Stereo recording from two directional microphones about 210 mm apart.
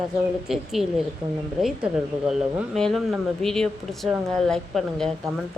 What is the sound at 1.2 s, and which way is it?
Speech, 20° right (ahead or behind).